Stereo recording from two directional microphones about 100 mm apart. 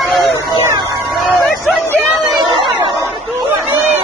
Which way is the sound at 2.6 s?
55° right (ahead or behind).